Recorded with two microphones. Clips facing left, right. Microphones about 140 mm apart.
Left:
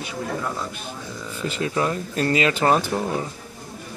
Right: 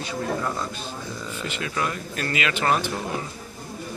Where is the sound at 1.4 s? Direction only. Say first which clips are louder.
Left 5 dB; 35° left (ahead or behind).